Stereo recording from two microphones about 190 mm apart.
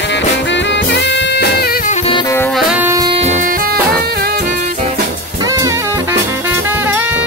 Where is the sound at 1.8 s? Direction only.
40° left (ahead or behind).